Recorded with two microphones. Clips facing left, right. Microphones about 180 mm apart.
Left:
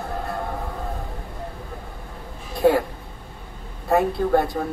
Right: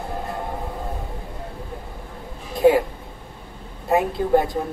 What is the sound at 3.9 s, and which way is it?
Speech, 15° right (ahead or behind).